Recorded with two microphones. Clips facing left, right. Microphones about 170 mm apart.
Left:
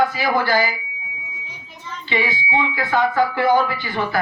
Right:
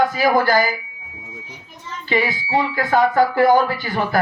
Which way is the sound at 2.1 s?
40° right (ahead or behind).